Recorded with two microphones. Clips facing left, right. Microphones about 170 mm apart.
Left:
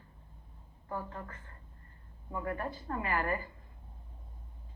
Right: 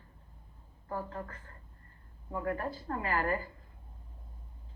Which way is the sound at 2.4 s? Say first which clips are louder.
Right 2 dB; 35° right (ahead or behind).